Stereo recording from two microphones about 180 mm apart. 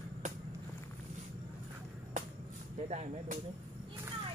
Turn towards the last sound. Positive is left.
turn(degrees=-40)  # may be behind; listen again after turning